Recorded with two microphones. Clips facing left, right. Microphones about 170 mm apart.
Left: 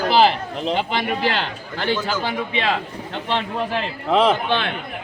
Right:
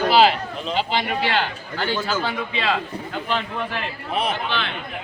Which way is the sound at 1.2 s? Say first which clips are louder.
Right 1 dB; 40° left (ahead or behind).